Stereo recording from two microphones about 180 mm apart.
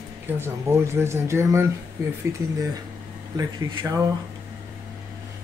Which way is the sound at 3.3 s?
15° right (ahead or behind).